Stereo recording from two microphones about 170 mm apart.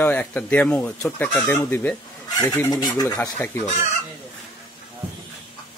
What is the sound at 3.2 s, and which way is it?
Speech, 10° left (ahead or behind).